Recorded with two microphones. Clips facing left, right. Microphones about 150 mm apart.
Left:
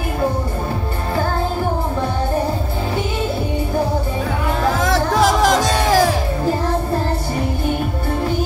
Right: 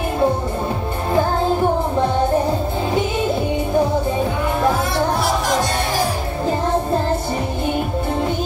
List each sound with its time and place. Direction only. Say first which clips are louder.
4.8 s music: left 3 dB; 90° left